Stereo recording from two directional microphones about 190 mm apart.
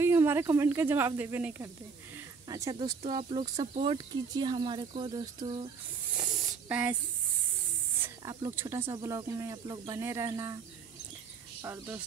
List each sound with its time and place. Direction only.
0.0 s speech: 15° right (ahead or behind)
6.7 s speech: 5° right (ahead or behind)
8.0 s speech: 15° right (ahead or behind)
11.6 s speech: 15° right (ahead or behind)